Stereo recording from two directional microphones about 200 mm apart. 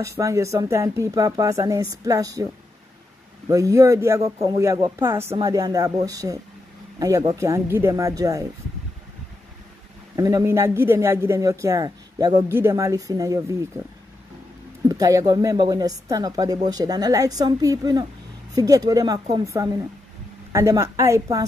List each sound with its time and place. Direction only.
0.0 s a man's voice: 15° right (ahead or behind)
3.4 s a man's voice: 15° right (ahead or behind)
10.1 s a man's voice: 15° right (ahead or behind)
14.9 s a woman's voice: 15° right (ahead or behind)